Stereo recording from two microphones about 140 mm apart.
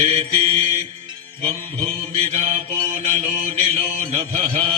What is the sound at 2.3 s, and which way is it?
Mantra, 60° right (ahead or behind).